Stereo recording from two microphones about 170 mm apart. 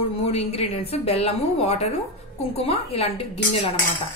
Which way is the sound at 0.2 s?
35° left (ahead or behind).